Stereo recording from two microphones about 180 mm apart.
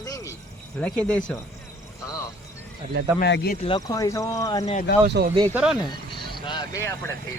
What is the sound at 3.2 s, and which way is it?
Speech, 70° left (ahead or behind).